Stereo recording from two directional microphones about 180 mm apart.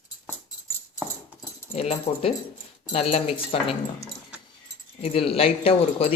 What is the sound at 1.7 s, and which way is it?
Speech, 35° left (ahead or behind).